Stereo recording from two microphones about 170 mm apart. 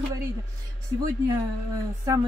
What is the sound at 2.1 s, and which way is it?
Speech, 20° right (ahead or behind).